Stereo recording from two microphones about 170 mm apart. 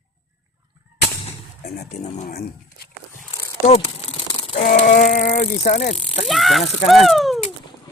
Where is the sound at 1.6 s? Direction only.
65° left (ahead or behind).